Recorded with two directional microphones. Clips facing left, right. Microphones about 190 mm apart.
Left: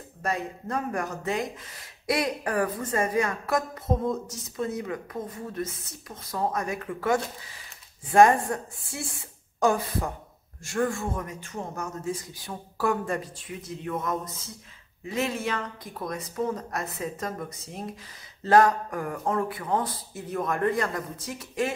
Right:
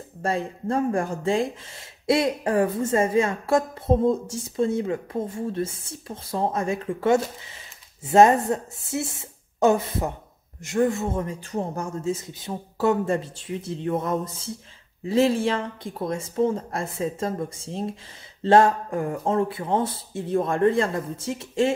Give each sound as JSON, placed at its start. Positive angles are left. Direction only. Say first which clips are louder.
{"t": 0.2, "sound": "a woman's voice", "louder": "right 4 dB", "side_deg": -30}